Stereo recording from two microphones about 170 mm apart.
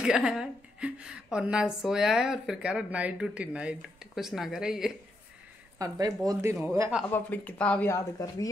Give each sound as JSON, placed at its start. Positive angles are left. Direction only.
{"t": 0.0, "sound": "a woman's voice", "side_deg": -5}
{"t": 5.8, "sound": "speech", "side_deg": -20}
{"t": 7.1, "sound": "speech", "side_deg": 10}
{"t": 7.9, "sound": "speech", "side_deg": 20}